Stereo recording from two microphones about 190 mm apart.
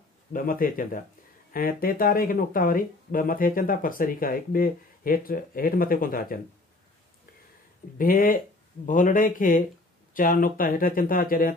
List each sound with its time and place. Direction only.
0.3 s speech: 45° left (ahead or behind)
8.0 s speech: 50° left (ahead or behind)